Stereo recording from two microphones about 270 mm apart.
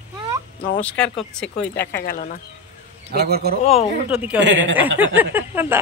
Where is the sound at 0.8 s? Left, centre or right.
Centre.